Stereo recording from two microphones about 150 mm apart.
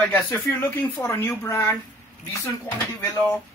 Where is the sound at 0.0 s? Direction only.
10° left (ahead or behind).